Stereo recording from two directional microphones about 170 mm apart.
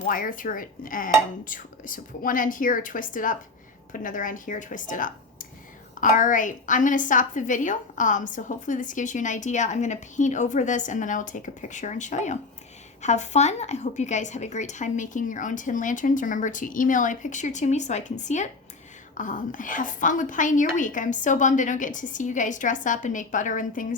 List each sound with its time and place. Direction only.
0.0 s a woman's voice: 55° left (ahead or behind)